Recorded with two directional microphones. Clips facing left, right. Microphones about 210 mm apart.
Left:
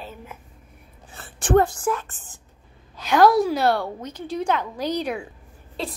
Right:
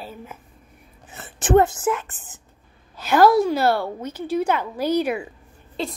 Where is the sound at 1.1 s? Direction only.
20° right (ahead or behind).